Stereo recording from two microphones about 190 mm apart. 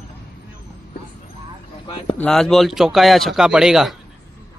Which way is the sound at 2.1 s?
5° left (ahead or behind).